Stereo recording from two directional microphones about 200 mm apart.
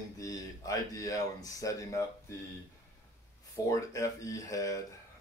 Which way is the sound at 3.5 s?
15° left (ahead or behind).